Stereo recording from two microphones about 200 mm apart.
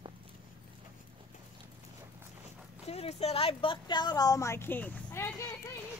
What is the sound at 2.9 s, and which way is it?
A woman's voice, 30° left (ahead or behind).